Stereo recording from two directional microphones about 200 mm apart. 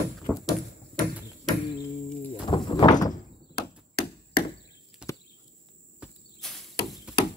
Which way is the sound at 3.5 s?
50° left (ahead or behind).